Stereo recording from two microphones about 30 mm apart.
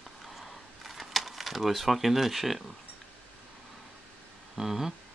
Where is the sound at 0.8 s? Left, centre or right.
Centre.